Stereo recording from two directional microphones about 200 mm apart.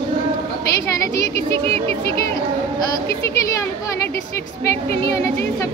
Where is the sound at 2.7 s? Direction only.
20° left (ahead or behind).